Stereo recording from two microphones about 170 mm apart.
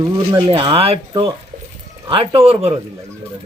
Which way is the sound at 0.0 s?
30° right (ahead or behind).